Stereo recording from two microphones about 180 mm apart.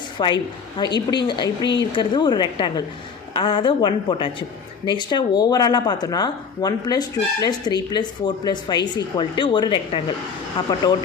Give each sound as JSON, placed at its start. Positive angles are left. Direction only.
{"t": 0.2, "sound": "speech", "side_deg": 25}